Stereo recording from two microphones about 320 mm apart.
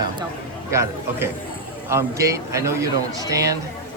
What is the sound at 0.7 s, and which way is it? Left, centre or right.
A man's voice, centre.